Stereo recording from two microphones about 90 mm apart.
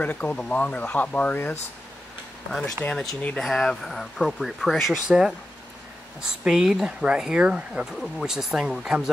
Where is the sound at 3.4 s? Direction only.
Centre (ahead or behind).